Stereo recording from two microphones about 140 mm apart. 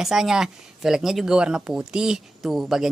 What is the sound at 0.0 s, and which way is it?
Speech, 5° right (ahead or behind).